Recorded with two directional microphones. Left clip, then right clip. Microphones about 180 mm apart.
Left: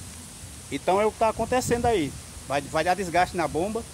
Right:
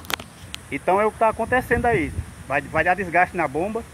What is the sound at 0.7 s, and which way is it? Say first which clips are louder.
Speech: right 3 dB; 10° left (ahead or behind).